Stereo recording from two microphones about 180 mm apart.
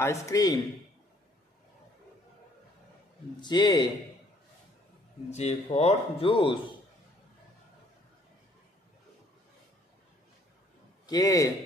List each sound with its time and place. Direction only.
0.0 s a man's voice: 15° left (ahead or behind)
3.3 s a man's voice: 25° left (ahead or behind)
5.3 s speech: 35° left (ahead or behind)
11.1 s a man's voice: 20° left (ahead or behind)